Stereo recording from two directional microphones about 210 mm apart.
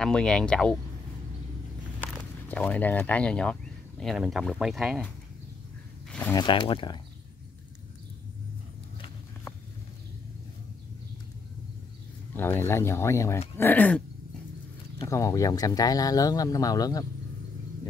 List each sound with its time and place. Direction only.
0.0 s speech: 5° left (ahead or behind)
2.4 s speech: 5° left (ahead or behind)
6.3 s speech: 20° left (ahead or behind)
12.4 s speech: 10° left (ahead or behind)
15.0 s speech: 15° left (ahead or behind)